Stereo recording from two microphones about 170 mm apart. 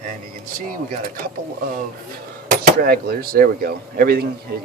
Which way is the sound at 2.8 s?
65° right (ahead or behind).